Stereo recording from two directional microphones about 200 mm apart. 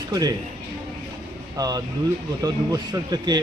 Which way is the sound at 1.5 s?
20° right (ahead or behind).